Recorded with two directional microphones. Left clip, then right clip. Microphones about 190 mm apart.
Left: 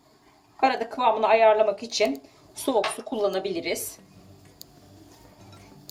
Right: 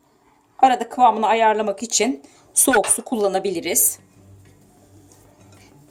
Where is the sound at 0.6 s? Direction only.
45° right (ahead or behind).